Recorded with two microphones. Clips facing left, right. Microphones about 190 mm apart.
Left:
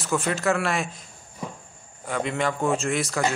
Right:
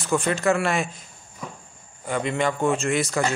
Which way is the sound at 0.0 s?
Centre (ahead or behind).